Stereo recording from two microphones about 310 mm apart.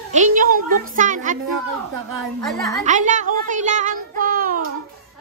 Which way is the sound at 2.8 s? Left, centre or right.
Right.